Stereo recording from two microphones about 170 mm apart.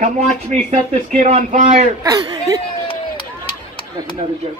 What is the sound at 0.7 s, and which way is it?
Speech, 40° right (ahead or behind).